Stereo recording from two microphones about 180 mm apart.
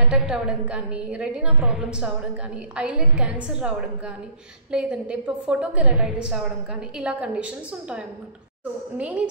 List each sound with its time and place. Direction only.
0.1 s a woman's voice: 5° right (ahead or behind)